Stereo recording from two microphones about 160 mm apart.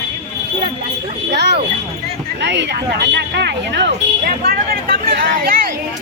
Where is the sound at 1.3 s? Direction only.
90° right; by 5.5 s 70° right (ahead or behind).